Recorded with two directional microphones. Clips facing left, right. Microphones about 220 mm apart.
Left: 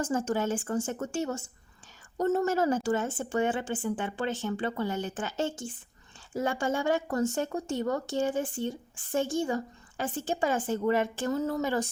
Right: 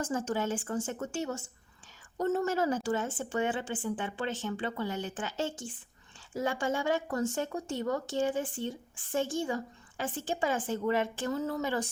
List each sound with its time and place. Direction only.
0.0 s speech: 45° left (ahead or behind)